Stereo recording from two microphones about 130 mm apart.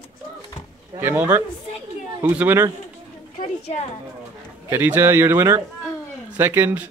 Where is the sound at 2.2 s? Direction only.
15° right (ahead or behind).